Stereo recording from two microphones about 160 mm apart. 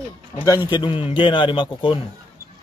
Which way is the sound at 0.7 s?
30° left (ahead or behind).